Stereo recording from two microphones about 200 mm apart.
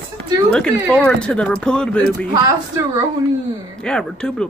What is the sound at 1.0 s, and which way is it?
Speech, 5° left (ahead or behind).